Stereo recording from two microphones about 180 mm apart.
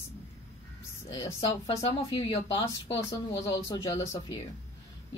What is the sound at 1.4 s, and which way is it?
Speech, 35° left (ahead or behind).